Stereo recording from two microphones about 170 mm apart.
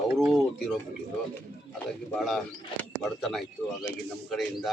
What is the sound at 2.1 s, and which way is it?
Speech, centre (ahead or behind).